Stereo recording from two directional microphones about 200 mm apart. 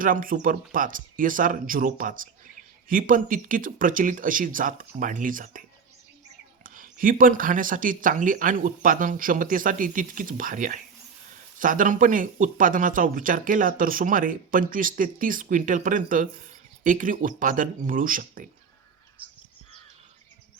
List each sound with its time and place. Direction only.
0.0 s speech: 45° right (ahead or behind)